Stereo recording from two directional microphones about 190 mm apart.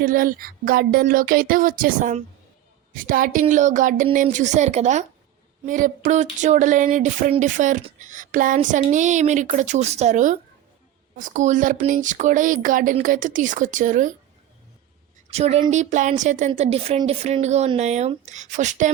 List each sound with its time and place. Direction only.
0.0 s speech: 45° right (ahead or behind)
15.3 s speech: 35° right (ahead or behind)